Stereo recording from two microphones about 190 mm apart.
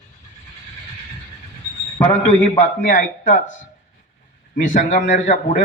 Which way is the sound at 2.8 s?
45° left (ahead or behind).